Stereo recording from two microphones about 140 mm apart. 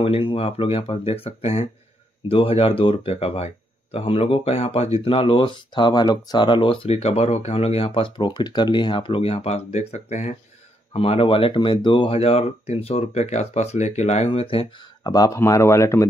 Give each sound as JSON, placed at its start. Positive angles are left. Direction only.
{"t": 0.0, "sound": "speech", "side_deg": 40}
{"t": 10.9, "sound": "speech", "side_deg": 40}
{"t": 15.0, "sound": "speech", "side_deg": 25}